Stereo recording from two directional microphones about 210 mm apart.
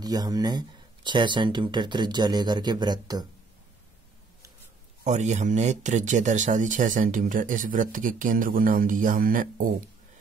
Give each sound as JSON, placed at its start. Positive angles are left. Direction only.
{"t": 0.0, "sound": "speech", "side_deg": -20}
{"t": 5.0, "sound": "speech", "side_deg": -35}